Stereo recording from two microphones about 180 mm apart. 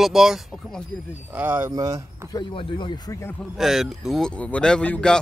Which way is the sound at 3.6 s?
Centre (ahead or behind).